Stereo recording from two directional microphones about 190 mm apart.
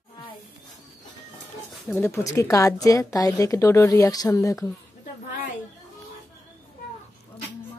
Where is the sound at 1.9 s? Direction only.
15° left (ahead or behind).